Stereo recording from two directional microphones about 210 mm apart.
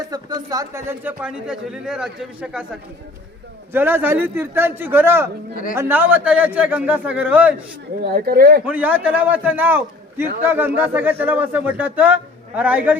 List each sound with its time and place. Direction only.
0.1 s speech: 20° right (ahead or behind)
3.7 s speech: 10° right (ahead or behind)
8.0 s speech: 45° right (ahead or behind)
8.6 s speech: 5° right (ahead or behind)